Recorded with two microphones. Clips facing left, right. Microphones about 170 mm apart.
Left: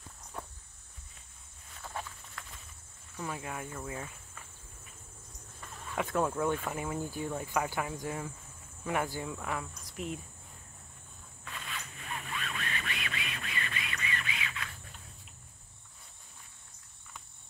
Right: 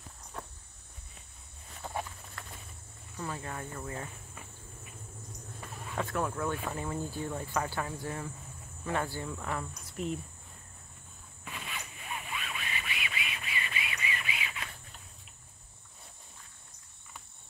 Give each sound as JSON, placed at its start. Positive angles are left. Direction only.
{"t": 1.8, "sound": "clip-clop", "side_deg": -20}
{"t": 3.2, "sound": "speech", "side_deg": 10}
{"t": 6.0, "sound": "speech", "side_deg": 20}
{"t": 11.4, "sound": "a sound", "side_deg": -15}